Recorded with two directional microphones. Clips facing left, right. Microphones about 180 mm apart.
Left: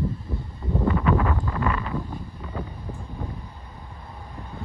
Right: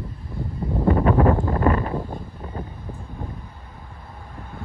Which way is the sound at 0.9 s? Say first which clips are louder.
Right 6 dB; 35° right (ahead or behind).